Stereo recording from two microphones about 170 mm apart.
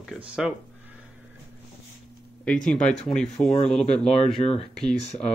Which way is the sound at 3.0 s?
Centre (ahead or behind).